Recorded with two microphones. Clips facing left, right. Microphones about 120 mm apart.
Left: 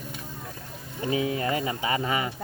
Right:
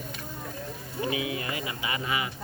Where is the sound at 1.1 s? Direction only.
40° left (ahead or behind).